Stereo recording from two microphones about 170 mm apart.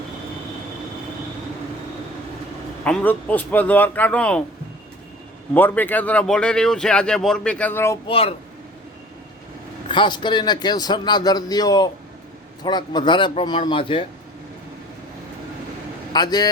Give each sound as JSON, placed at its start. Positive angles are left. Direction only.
{"t": 2.8, "sound": "a man's voice", "side_deg": 10}
{"t": 5.5, "sound": "a man's voice", "side_deg": 10}
{"t": 8.0, "sound": "speech", "side_deg": 35}
{"t": 9.9, "sound": "a man's voice", "side_deg": 25}
{"t": 16.1, "sound": "a man's voice", "side_deg": 25}